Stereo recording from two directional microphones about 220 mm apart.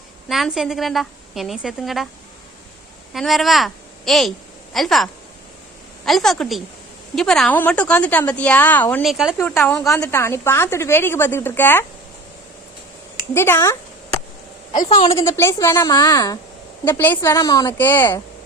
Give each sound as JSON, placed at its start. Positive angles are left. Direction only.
{"t": 0.3, "sound": "a woman's voice", "side_deg": 0}
{"t": 3.1, "sound": "a woman's voice", "side_deg": 0}
{"t": 6.1, "sound": "a woman's voice", "side_deg": 0}
{"t": 13.3, "sound": "a woman's voice", "side_deg": 10}
{"t": 14.8, "sound": "a woman's voice", "side_deg": 30}
{"t": 15.1, "sound": "a woman's voice", "side_deg": 10}